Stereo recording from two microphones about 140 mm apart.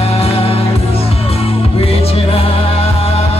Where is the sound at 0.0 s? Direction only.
45° left (ahead or behind).